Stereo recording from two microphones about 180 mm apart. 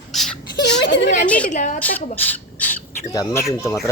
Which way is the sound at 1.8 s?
10° left (ahead or behind).